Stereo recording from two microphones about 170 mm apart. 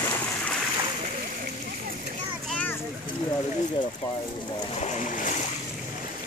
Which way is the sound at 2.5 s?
5° left (ahead or behind).